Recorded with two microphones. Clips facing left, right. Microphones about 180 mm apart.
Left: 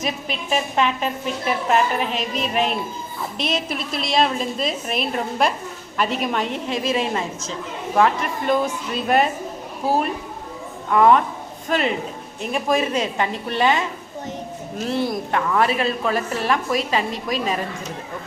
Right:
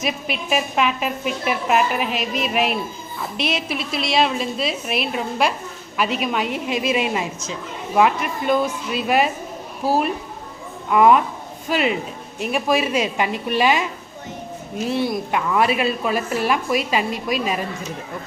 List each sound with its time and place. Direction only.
0.0 s a woman's voice: 10° right (ahead or behind)
2.0 s music: 30° left (ahead or behind)
2.4 s a woman's voice: 5° right (ahead or behind)
15.4 s a woman's voice: 15° right (ahead or behind)